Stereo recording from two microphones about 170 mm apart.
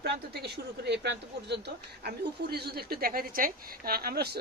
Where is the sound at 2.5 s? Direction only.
70° right (ahead or behind).